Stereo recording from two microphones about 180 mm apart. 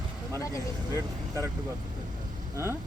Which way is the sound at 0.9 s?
15° right (ahead or behind).